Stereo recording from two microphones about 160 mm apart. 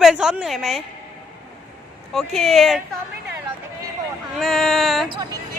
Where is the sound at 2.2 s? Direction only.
Centre (ahead or behind).